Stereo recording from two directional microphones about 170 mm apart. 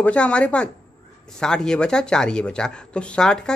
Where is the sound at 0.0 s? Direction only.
5° left (ahead or behind).